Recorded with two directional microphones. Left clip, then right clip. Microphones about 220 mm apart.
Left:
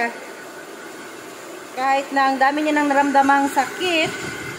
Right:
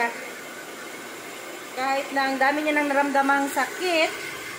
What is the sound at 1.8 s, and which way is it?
A woman's voice, 40° left (ahead or behind).